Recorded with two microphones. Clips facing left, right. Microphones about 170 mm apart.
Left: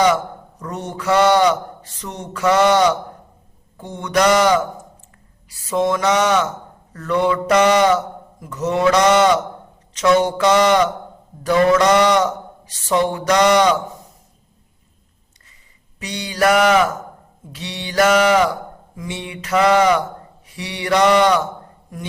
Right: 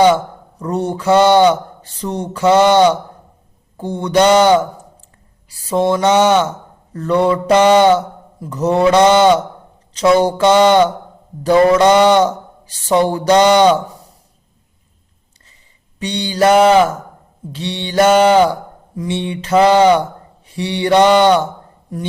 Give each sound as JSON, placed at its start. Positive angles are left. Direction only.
{"t": 0.6, "sound": "mantra", "side_deg": -30}
{"t": 5.5, "sound": "speech", "side_deg": -35}
{"t": 6.9, "sound": "mantra", "side_deg": -30}
{"t": 9.9, "sound": "speech", "side_deg": -30}
{"t": 16.0, "sound": "mantra", "side_deg": -30}